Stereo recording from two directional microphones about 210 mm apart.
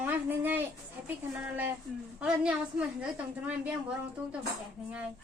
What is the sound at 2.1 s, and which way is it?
Speech, 5° right (ahead or behind).